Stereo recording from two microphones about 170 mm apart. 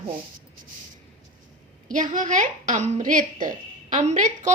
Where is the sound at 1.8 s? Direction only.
50° right (ahead or behind).